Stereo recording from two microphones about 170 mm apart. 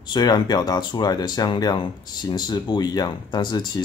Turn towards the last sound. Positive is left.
turn(degrees=25)  # may be behind; listen again after turning